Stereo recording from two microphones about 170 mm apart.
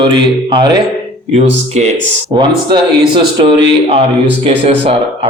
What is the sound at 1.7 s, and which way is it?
Speech, 40° right (ahead or behind).